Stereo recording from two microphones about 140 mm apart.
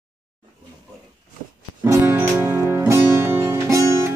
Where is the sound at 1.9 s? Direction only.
20° right (ahead or behind).